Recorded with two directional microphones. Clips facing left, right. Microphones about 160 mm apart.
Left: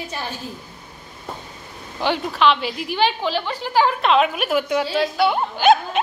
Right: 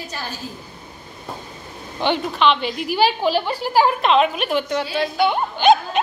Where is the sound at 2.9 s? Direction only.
10° right (ahead or behind).